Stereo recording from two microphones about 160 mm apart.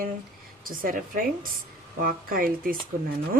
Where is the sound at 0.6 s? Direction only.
60° right (ahead or behind).